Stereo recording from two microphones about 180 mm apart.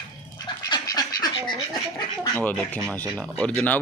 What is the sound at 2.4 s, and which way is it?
Speech, 10° left (ahead or behind).